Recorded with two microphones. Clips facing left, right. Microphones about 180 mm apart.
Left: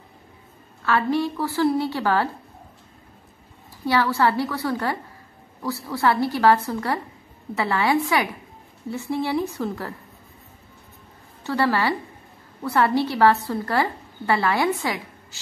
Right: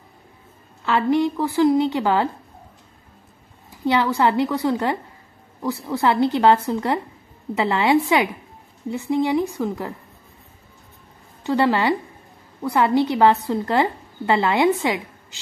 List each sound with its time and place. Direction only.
0.8 s a woman's voice: 20° right (ahead or behind)
3.8 s a woman's voice: 20° right (ahead or behind)
11.4 s a woman's voice: 20° right (ahead or behind)